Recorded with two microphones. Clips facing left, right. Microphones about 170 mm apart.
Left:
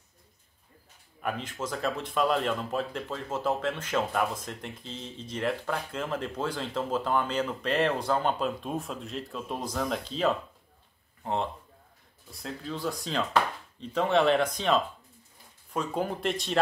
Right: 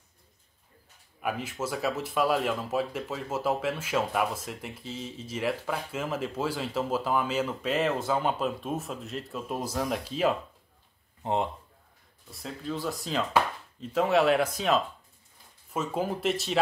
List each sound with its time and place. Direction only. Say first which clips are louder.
1.2 s a man's voice: right 1 dB; 10° right (ahead or behind)
12.3 s speech: right 1 dB; centre (ahead or behind)